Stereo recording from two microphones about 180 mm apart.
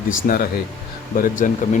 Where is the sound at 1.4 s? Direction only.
45° left (ahead or behind).